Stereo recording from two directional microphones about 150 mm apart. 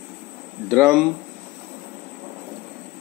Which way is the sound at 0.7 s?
Centre (ahead or behind).